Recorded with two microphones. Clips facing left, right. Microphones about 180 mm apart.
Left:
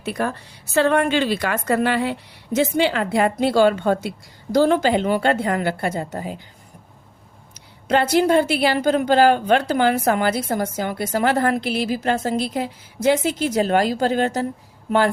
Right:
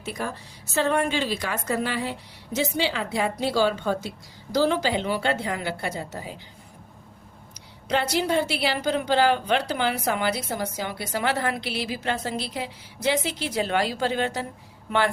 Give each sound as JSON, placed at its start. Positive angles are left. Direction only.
{"t": 0.0, "sound": "a woman's voice", "side_deg": 65}
{"t": 7.9, "sound": "a woman's voice", "side_deg": 50}